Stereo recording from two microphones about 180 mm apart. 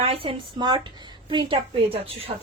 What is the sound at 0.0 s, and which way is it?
A woman's voice, 30° right (ahead or behind).